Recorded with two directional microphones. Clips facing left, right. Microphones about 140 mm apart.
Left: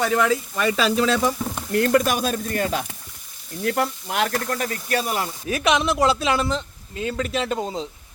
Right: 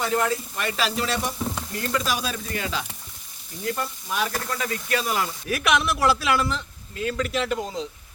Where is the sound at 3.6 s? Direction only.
70° left (ahead or behind).